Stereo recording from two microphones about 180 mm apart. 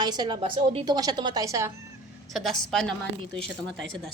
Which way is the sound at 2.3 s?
Centre (ahead or behind).